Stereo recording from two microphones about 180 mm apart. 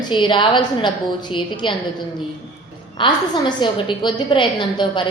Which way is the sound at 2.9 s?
25° left (ahead or behind).